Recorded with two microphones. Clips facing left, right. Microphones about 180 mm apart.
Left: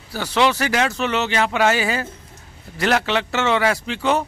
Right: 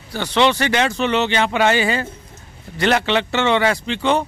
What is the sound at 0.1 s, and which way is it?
A man's voice, 5° left (ahead or behind).